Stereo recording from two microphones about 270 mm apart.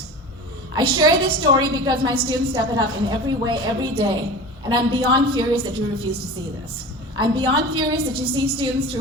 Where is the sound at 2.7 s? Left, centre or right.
Centre.